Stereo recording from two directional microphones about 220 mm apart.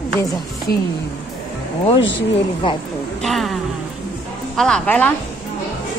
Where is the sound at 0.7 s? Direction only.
45° left (ahead or behind).